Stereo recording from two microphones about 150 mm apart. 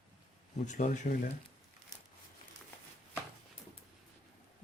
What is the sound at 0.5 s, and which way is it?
Speech, 55° left (ahead or behind).